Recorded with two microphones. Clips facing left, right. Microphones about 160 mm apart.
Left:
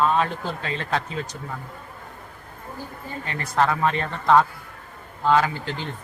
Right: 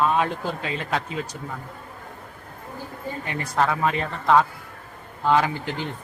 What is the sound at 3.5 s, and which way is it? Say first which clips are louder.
Speech: left 1 dB; 5° right (ahead or behind).